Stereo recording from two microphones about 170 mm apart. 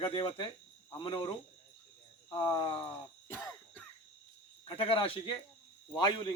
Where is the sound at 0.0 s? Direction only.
30° left (ahead or behind).